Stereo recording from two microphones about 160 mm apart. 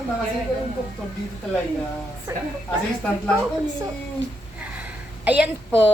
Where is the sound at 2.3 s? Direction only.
20° right (ahead or behind).